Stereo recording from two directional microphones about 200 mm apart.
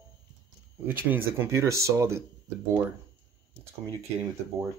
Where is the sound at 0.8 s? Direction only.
10° right (ahead or behind).